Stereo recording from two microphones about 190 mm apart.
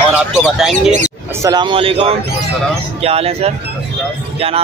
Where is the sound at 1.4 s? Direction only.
20° right (ahead or behind).